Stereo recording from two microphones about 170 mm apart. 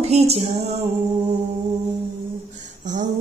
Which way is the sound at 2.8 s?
50° right (ahead or behind).